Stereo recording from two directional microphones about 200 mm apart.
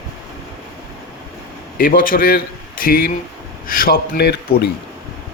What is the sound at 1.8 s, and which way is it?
Speech, 45° left (ahead or behind).